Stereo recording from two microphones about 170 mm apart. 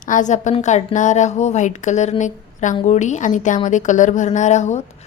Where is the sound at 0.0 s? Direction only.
50° left (ahead or behind).